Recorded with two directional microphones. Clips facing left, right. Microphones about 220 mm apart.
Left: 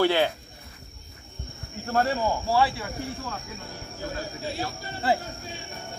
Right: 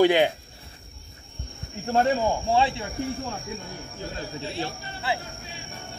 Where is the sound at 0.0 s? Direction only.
15° right (ahead or behind).